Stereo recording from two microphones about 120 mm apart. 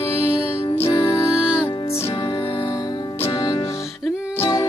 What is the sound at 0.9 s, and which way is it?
Music, 25° left (ahead or behind).